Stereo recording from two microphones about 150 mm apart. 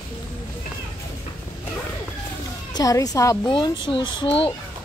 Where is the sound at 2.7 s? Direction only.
25° left (ahead or behind).